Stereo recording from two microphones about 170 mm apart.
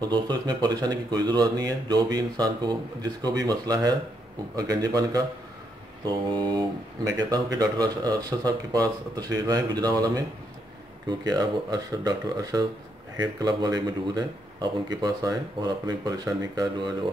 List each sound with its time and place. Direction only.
0.0 s speech: 25° right (ahead or behind)